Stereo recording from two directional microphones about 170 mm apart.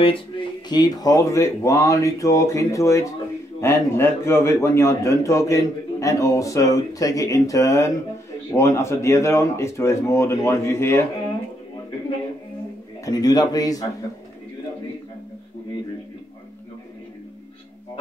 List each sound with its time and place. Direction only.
0.7 s a man's voice: 25° left (ahead or behind)
13.0 s speech: 20° left (ahead or behind)